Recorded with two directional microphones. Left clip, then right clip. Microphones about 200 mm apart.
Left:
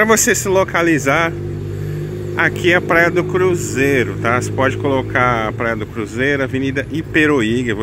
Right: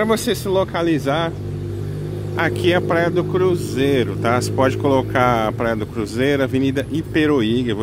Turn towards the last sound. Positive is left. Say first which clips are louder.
# left 2 dB
turn(degrees=0)  # may be behind; listen again after turning